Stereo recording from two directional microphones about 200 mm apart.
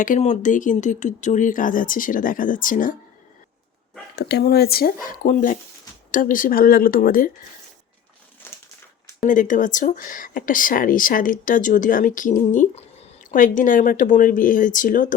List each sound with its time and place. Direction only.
0.0 s speech: 40° left (ahead or behind)
4.1 s speech: 55° left (ahead or behind)
8.4 s crumpling: 10° left (ahead or behind)
9.2 s speech: 40° left (ahead or behind)